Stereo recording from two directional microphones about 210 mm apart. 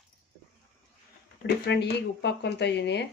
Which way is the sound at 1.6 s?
55° left (ahead or behind).